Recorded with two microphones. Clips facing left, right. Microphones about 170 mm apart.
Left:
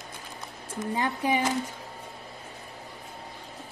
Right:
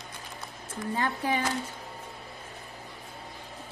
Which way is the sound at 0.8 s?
15° left (ahead or behind).